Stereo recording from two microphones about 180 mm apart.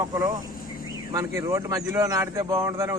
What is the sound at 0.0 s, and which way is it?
Speech, 20° right (ahead or behind).